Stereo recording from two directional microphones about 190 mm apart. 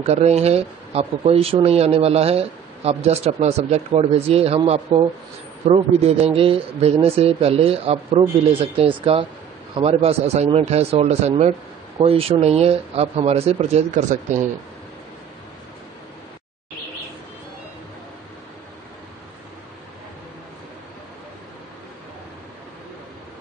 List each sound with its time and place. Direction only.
0.0 s speech: 35° right (ahead or behind)